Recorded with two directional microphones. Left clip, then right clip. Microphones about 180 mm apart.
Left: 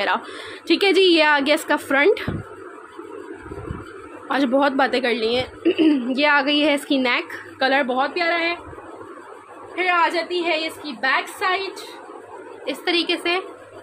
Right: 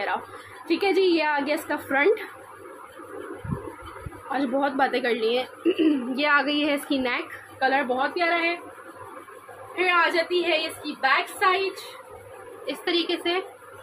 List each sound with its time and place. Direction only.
0.7 s a woman's voice: 40° left (ahead or behind)
4.3 s a woman's voice: 45° left (ahead or behind)
7.5 s a woman's voice: 60° left (ahead or behind)
9.8 s a woman's voice: 55° left (ahead or behind)
12.6 s a woman's voice: 65° left (ahead or behind)